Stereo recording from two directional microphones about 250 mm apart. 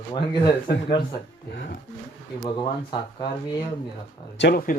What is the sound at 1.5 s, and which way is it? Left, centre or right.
Speech, left.